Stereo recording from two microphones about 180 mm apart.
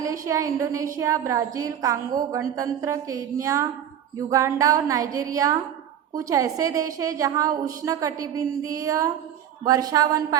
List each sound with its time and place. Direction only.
0.0 s a woman's voice: 20° right (ahead or behind)